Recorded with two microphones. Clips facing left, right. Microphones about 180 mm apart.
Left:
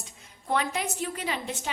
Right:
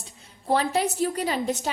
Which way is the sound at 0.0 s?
30° right (ahead or behind).